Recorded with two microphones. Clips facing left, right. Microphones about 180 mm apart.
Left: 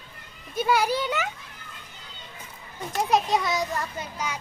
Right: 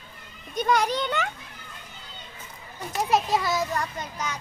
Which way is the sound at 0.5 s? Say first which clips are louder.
Even; 5° left (ahead or behind).